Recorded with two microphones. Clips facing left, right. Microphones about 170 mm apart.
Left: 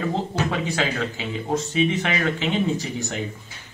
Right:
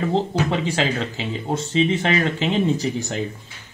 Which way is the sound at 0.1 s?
30° right (ahead or behind).